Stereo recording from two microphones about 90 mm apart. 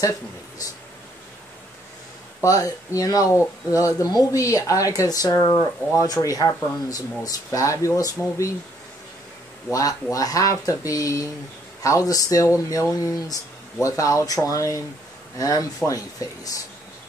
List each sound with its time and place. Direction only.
2.4 s speech: 40° left (ahead or behind)
5.4 s speech: 25° left (ahead or behind)
5.9 s speech: 40° left (ahead or behind)
9.7 s speech: 40° left (ahead or behind)